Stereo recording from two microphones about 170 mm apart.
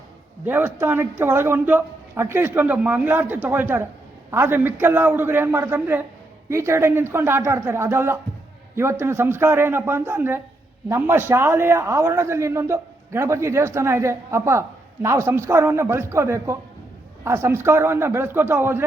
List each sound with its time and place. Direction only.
0.4 s a man's voice: 10° right (ahead or behind)